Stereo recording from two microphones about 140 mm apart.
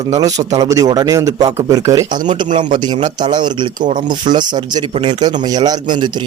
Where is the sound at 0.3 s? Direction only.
45° right (ahead or behind).